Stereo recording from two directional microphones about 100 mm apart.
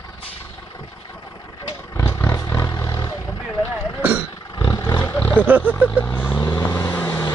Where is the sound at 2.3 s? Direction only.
30° left (ahead or behind).